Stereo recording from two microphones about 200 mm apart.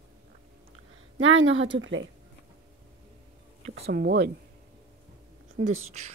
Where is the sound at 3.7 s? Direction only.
55° right (ahead or behind).